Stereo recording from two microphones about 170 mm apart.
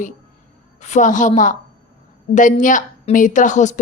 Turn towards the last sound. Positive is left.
turn(degrees=45)  # may be behind; listen again after turning